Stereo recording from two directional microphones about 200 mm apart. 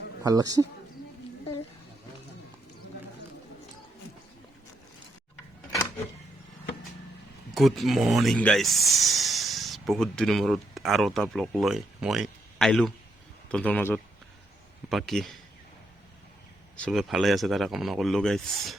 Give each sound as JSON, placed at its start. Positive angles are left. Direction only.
{"t": 0.2, "sound": "a man's voice", "side_deg": -20}
{"t": 7.5, "sound": "speech", "side_deg": 0}
{"t": 16.7, "sound": "speech", "side_deg": 5}